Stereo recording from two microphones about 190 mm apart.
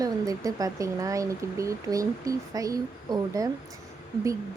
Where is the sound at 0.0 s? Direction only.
20° right (ahead or behind).